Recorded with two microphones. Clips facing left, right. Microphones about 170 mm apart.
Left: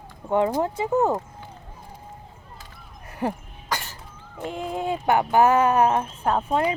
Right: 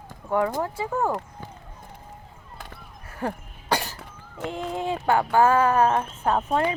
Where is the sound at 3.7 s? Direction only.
35° right (ahead or behind).